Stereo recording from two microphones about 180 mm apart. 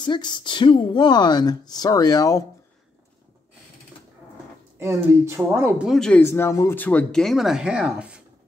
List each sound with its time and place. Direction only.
0.0 s speech: 25° left (ahead or behind)
4.7 s speech: 15° right (ahead or behind)